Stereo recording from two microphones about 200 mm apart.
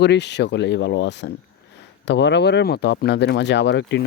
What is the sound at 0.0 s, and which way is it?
Speech, 60° left (ahead or behind).